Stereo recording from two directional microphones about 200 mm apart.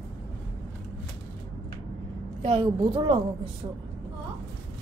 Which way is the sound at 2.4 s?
25° right (ahead or behind).